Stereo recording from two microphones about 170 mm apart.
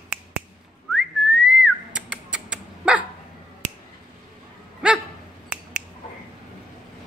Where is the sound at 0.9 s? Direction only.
5° right (ahead or behind).